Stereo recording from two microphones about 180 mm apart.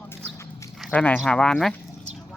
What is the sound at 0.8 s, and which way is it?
Speech, 5° left (ahead or behind).